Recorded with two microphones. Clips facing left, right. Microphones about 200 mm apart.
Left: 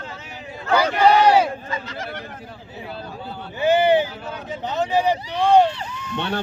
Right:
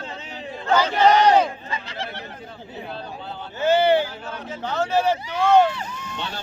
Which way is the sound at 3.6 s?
15° left (ahead or behind).